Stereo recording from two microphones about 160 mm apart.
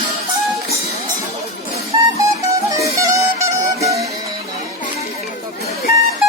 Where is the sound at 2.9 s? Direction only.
20° right (ahead or behind).